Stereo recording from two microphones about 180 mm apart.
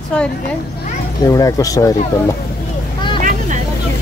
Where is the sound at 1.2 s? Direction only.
20° left (ahead or behind).